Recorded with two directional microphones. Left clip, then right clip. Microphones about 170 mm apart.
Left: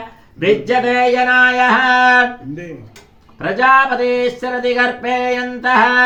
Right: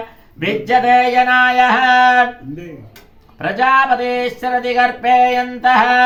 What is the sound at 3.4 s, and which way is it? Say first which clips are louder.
Speech: left 1 dB; 5° right (ahead or behind).